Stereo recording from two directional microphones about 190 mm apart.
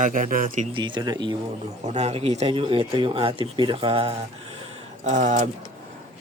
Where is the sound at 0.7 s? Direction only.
25° right (ahead or behind).